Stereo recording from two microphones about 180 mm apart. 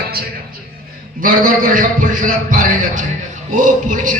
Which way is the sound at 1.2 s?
50° right (ahead or behind).